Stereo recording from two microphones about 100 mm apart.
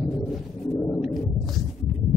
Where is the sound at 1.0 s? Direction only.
Centre (ahead or behind).